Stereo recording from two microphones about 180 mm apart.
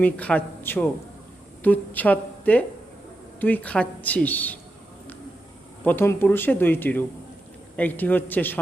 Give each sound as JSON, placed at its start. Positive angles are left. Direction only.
{"t": 0.0, "sound": "speech", "side_deg": 10}
{"t": 5.8, "sound": "speech", "side_deg": 10}